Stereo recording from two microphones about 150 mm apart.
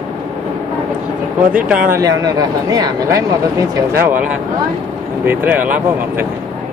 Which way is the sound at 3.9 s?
15° right (ahead or behind).